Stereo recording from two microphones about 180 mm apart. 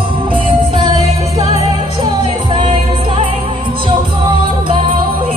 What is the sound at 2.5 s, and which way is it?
Music, 30° right (ahead or behind).